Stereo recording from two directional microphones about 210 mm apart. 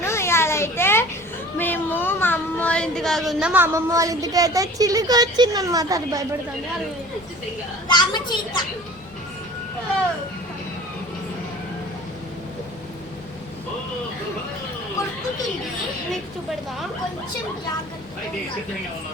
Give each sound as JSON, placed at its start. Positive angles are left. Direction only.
{"t": 0.0, "sound": "a sound", "side_deg": 10}
{"t": 1.5, "sound": "speech", "side_deg": 10}
{"t": 7.9, "sound": "a woman's voice", "side_deg": 20}